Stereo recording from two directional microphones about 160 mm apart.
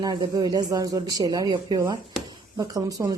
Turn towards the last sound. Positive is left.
turn(degrees=-20)  # may be behind; listen again after turning